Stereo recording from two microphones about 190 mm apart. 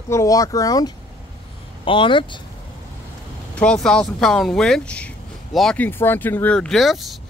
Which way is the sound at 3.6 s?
5° left (ahead or behind).